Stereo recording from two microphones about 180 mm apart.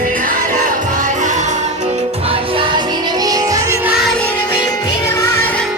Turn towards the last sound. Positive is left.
turn(degrees=15)  # may be behind; listen again after turning